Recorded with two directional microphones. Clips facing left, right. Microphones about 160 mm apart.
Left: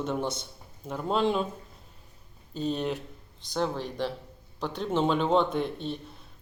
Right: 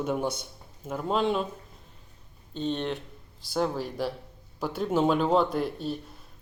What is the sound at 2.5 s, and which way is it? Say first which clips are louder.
Speech: even; 5° left (ahead or behind).